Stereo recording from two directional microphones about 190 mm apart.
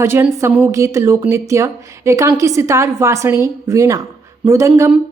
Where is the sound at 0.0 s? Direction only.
15° right (ahead or behind).